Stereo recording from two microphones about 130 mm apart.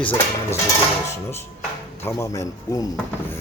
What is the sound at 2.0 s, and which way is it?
Speech, 25° left (ahead or behind).